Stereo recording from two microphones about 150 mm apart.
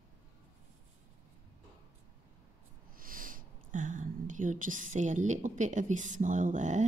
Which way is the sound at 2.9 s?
70° right (ahead or behind).